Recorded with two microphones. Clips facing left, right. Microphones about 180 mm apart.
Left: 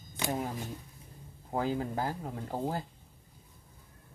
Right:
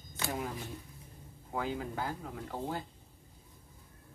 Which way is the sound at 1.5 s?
35° left (ahead or behind).